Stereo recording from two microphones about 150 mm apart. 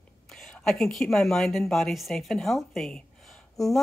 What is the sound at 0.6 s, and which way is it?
Speech, centre (ahead or behind).